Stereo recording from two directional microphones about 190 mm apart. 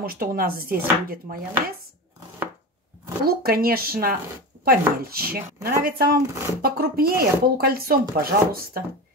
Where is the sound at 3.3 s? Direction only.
50° right (ahead or behind).